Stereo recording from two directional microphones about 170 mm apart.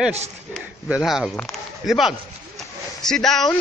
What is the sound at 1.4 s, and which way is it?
Speech, centre (ahead or behind).